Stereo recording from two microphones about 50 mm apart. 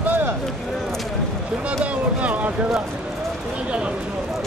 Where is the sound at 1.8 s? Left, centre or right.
Right.